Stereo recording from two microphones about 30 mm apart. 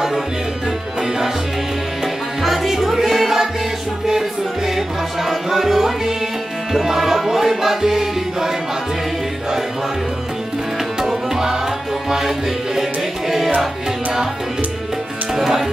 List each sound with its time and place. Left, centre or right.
1.0 s music: centre
2.4 s music: centre
4.6 s music: centre
11.0 s tabla: centre
12.1 s music: centre
15.3 s speech: centre